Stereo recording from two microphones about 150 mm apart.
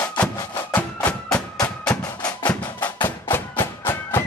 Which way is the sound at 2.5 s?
10° left (ahead or behind).